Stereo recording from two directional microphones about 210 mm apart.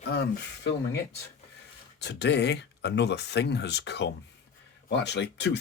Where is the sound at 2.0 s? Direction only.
55° left (ahead or behind).